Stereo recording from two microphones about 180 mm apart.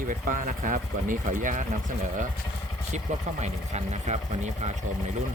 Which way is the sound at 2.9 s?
40° right (ahead or behind).